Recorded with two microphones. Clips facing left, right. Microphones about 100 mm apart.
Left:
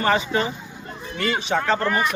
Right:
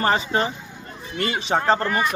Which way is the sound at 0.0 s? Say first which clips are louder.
Even; 35° right (ahead or behind).